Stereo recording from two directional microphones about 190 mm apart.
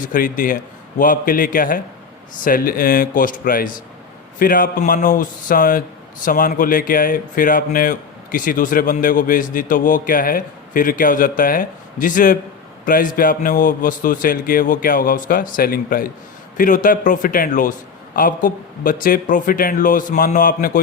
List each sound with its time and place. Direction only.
0.0 s speech: 45° left (ahead or behind)